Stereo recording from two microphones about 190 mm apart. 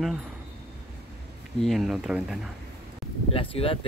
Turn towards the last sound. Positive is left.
turn(degrees=30)  # may be behind; listen again after turning